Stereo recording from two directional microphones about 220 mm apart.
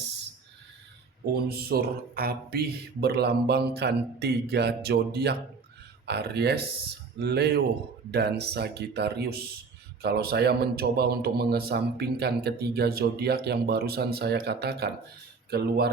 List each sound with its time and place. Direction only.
1.2 s a man's voice: 45° right (ahead or behind)